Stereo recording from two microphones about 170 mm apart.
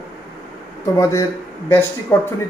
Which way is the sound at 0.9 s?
20° left (ahead or behind).